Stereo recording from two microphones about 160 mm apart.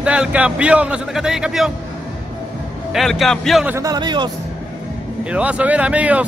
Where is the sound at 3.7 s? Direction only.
20° right (ahead or behind).